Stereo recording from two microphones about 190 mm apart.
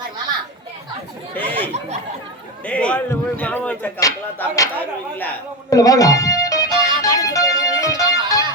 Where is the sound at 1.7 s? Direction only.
35° right (ahead or behind).